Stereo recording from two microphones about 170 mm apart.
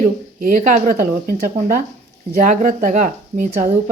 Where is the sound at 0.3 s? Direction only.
55° right (ahead or behind).